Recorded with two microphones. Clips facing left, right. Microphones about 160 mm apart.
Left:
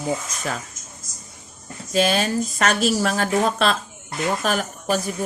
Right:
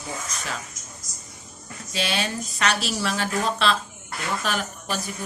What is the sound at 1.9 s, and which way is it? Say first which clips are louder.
Speech: left 8 dB; 45° left (ahead or behind).